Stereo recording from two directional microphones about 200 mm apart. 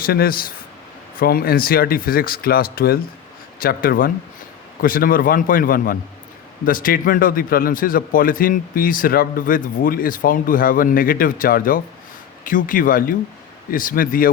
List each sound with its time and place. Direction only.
0.0 s a man's voice: 50° left (ahead or behind)